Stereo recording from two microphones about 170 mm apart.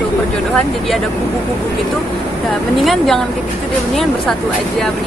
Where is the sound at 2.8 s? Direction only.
Centre (ahead or behind).